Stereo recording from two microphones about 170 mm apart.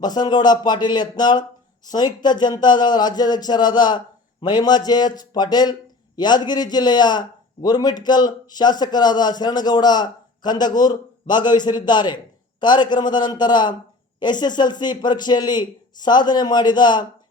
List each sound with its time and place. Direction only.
0.0 s a man's voice: 25° left (ahead or behind)